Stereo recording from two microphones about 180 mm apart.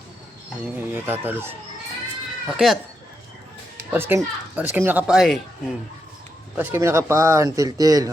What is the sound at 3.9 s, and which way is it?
Speech, 10° right (ahead or behind).